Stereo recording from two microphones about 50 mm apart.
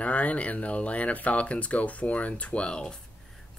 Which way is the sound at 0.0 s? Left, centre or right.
Left.